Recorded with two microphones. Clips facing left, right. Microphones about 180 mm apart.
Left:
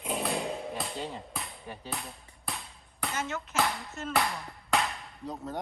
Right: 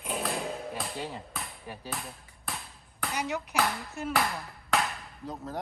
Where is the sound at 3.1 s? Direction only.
15° right (ahead or behind).